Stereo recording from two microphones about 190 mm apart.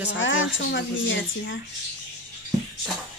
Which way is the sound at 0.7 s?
75° left (ahead or behind).